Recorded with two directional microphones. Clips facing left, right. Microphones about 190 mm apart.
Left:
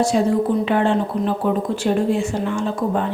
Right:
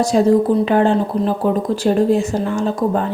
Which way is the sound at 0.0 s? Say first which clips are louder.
Right 4 dB; 40° right (ahead or behind).